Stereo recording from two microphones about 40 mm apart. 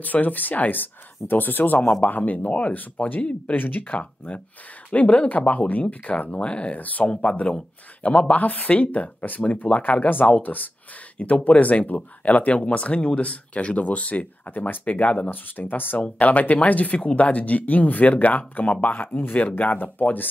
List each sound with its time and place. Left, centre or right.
0.0 s speech: left
2.0 s speech: left
3.8 s speech: left
7.1 s speech: left
8.2 s speech: left
11.1 s speech: left
15.2 s speech: left
16.0 s speech: left